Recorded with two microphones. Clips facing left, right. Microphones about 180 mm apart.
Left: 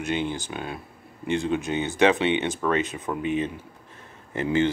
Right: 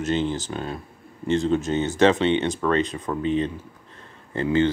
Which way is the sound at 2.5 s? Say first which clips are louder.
Right 2 dB; 5° left (ahead or behind).